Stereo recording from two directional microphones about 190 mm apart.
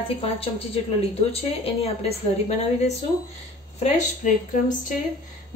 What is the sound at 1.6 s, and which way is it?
A woman's voice, 30° left (ahead or behind).